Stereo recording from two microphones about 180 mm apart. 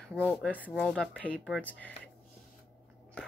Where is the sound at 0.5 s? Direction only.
10° right (ahead or behind); by 1.9 s 10° left (ahead or behind).